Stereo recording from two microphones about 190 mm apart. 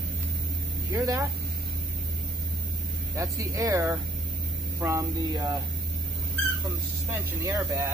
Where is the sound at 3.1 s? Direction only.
15° right (ahead or behind).